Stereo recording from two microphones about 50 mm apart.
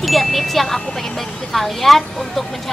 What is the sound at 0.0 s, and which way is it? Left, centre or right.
Speech, centre.